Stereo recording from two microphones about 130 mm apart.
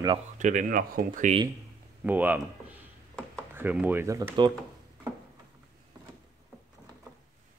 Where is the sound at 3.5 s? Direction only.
15° right (ahead or behind).